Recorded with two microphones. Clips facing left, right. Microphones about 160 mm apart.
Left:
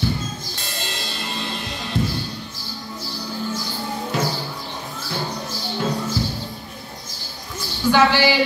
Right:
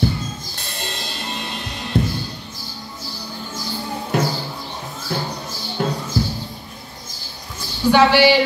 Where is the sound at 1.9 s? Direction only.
60° right (ahead or behind).